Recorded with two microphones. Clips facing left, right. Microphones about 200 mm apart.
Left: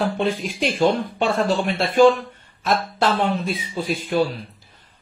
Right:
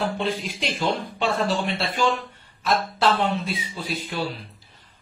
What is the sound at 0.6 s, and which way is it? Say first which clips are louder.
Speech: left 11 dB; 50° left (ahead or behind).